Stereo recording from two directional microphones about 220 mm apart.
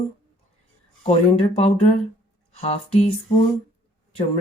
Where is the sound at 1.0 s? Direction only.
25° left (ahead or behind).